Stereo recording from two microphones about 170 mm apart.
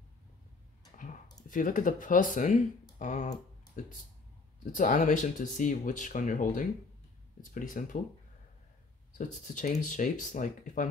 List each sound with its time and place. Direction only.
0.9 s a sound: 50° left (ahead or behind)
1.5 s speech: 50° left (ahead or behind)
9.2 s speech: 45° left (ahead or behind)